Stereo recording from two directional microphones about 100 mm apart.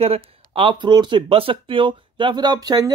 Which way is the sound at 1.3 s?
70° right (ahead or behind).